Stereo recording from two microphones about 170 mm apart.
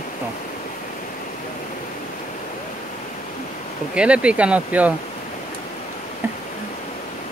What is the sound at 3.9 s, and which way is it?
Speech, 5° right (ahead or behind).